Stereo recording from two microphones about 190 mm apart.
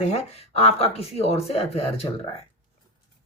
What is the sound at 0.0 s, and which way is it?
Speech, 35° left (ahead or behind).